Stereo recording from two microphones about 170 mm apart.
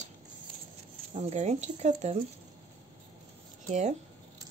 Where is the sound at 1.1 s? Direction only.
45° right (ahead or behind).